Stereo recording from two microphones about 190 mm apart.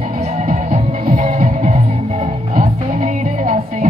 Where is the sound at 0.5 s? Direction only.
35° right (ahead or behind).